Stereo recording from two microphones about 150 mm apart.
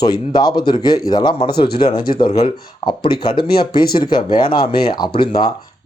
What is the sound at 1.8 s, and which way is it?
Speech, 30° left (ahead or behind).